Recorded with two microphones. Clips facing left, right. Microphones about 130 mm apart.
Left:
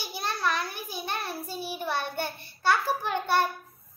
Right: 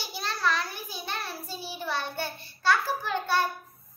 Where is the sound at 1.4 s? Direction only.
55° left (ahead or behind).